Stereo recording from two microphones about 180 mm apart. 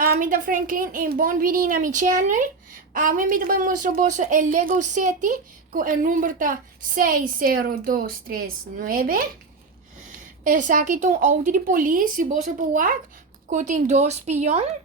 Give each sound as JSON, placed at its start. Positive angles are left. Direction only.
{"t": 0.0, "sound": "a woman's voice", "side_deg": -50}
{"t": 10.4, "sound": "a woman's voice", "side_deg": -45}